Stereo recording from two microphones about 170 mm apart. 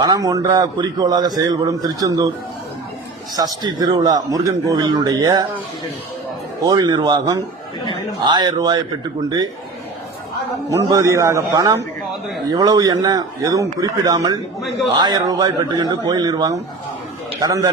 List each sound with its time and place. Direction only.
0.0 s a man's voice: 20° right (ahead or behind)
3.3 s a man's voice: 25° right (ahead or behind)
6.7 s a man's voice: 25° right (ahead or behind)
10.7 s a man's voice: 20° right (ahead or behind)